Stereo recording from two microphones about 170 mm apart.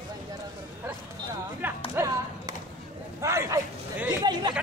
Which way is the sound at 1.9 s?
20° right (ahead or behind).